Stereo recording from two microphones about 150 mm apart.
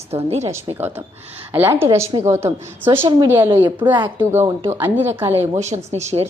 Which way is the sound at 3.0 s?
30° right (ahead or behind).